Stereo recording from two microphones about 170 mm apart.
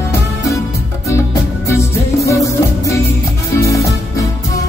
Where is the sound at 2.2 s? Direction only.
20° left (ahead or behind).